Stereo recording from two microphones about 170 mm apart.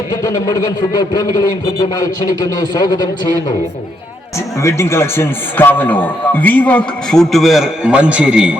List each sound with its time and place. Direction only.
0.2 s a man's voice: 20° left (ahead or behind)
4.6 s a man's voice: 15° left (ahead or behind); by 8.5 s 5° right (ahead or behind)